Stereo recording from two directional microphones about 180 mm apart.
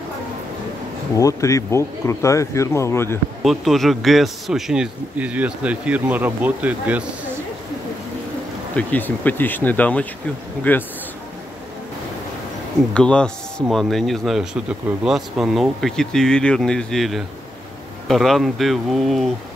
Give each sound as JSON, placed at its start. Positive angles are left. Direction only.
{"t": 1.1, "sound": "speech", "side_deg": 15}
{"t": 3.4, "sound": "speech", "side_deg": 0}
{"t": 8.7, "sound": "speech", "side_deg": 10}
{"t": 12.9, "sound": "speech", "side_deg": 5}